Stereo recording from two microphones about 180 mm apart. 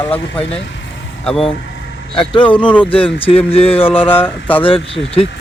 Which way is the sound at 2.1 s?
30° left (ahead or behind).